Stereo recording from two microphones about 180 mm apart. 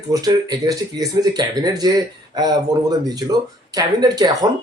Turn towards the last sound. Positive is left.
turn(degrees=-20)  # may be behind; listen again after turning